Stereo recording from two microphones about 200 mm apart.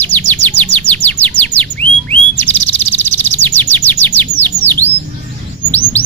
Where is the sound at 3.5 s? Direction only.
10° left (ahead or behind).